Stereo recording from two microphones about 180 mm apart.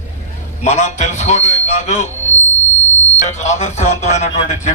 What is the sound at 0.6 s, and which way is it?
A man's voice, 40° left (ahead or behind).